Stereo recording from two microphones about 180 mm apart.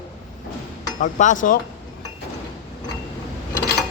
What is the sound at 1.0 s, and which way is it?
Speech, 45° left (ahead or behind).